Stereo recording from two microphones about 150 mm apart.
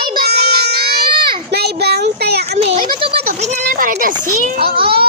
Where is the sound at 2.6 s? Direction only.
40° right (ahead or behind).